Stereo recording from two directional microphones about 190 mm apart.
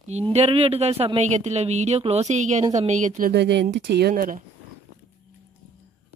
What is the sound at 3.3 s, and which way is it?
Speech, 65° right (ahead or behind).